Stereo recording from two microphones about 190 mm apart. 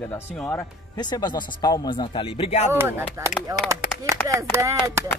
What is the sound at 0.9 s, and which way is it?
Speech, 20° left (ahead or behind).